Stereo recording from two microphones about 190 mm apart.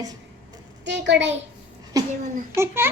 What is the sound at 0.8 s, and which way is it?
Speech, 65° right (ahead or behind).